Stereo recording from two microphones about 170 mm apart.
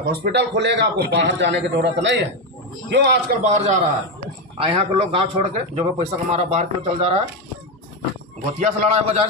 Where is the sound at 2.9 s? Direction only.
80° right.